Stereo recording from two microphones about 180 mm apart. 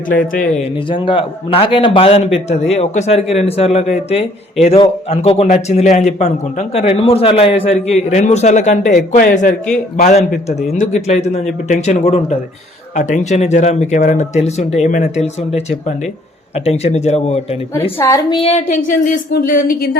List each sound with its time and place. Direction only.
0.6 s a man's voice: 30° left (ahead or behind)
18.0 s a woman's voice: 20° left (ahead or behind)
18.3 s a man's voice: 35° left (ahead or behind)
18.9 s speech: 50° left (ahead or behind)